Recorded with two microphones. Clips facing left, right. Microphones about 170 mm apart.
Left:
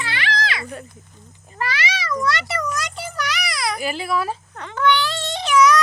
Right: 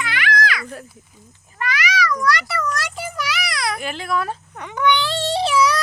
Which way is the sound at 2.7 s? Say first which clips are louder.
Right 1 dB; 5° right (ahead or behind).